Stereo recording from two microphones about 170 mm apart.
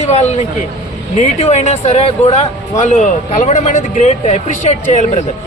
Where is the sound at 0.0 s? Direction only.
40° left (ahead or behind).